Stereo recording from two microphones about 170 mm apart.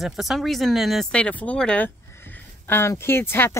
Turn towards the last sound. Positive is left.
turn(degrees=15)  # may be behind; listen again after turning